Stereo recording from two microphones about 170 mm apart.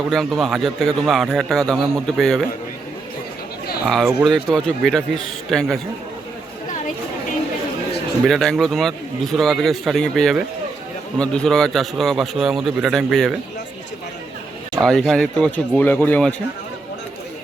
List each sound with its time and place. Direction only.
0.1 s a man's voice: centre (ahead or behind)
3.8 s a man's voice: centre (ahead or behind)
8.2 s a man's voice: centre (ahead or behind)
14.8 s speech: centre (ahead or behind)